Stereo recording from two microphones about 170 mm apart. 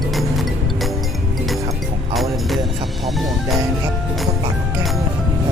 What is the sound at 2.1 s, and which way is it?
Music, centre (ahead or behind).